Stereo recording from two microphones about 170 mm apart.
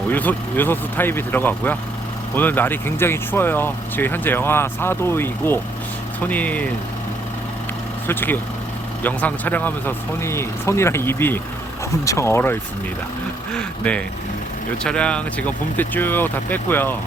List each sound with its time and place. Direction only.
0.1 s speech: 10° left (ahead or behind)
8.0 s speech: 10° left (ahead or behind)